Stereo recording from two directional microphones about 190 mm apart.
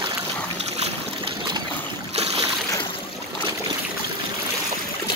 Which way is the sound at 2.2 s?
30° right (ahead or behind).